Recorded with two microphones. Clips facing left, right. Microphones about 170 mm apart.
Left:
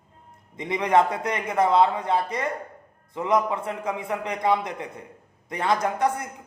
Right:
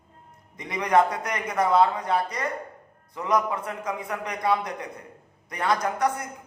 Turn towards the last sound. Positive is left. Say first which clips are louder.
# left 1 dB
turn(degrees=25)  # may be behind; listen again after turning